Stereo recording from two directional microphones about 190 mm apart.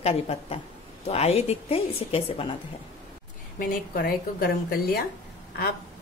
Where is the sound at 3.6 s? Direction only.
50° left (ahead or behind).